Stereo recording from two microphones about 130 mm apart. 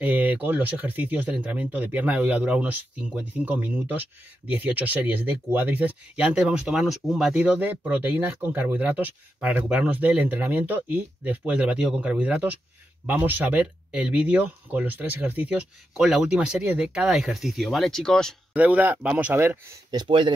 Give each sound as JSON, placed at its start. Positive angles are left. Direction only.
{"t": 0.0, "sound": "speech", "side_deg": -10}
{"t": 18.5, "sound": "speech", "side_deg": -10}
{"t": 19.9, "sound": "speech", "side_deg": -35}